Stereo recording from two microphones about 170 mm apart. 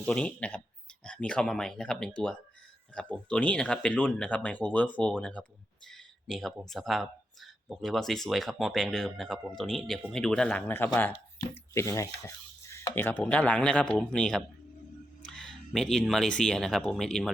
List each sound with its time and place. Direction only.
0.0 s speech: 5° left (ahead or behind)